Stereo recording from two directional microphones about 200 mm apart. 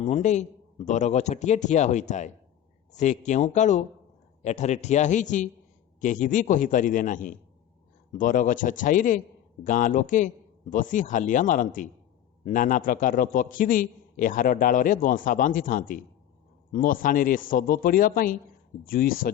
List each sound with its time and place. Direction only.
0.0 s a man's voice: 35° left (ahead or behind)